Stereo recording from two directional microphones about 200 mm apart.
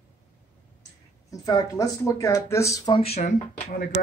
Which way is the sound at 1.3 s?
15° left (ahead or behind).